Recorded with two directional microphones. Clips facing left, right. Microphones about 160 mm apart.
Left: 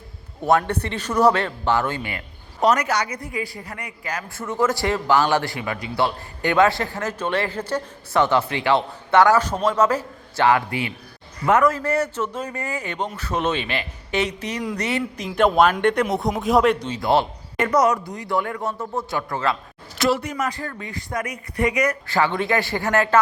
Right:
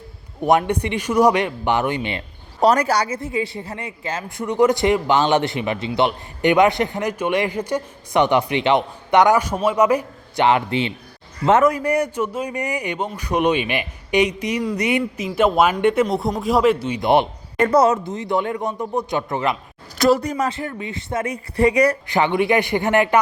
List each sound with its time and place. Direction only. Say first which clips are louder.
0.4 s a man's voice: right 2 dB; 15° right (ahead or behind)
16.9 s a woman's voice: right 3 dB; 20° right (ahead or behind)
20.0 s a woman's voice: right 5 dB; 40° right (ahead or behind)
22.0 s a woman's voice: right 3 dB; 20° right (ahead or behind)